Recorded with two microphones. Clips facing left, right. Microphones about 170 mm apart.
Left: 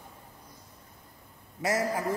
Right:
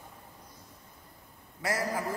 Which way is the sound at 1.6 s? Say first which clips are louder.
Left 3 dB; 25° left (ahead or behind).